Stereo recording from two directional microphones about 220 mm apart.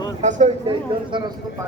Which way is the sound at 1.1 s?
20° right (ahead or behind).